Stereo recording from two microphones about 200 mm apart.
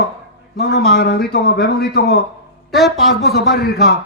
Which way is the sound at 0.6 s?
55° left (ahead or behind).